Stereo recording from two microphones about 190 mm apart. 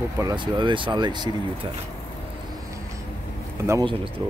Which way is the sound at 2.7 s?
15° right (ahead or behind).